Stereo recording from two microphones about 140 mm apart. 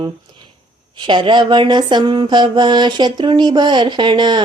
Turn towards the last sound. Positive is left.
turn(degrees=-30)  # may be behind; listen again after turning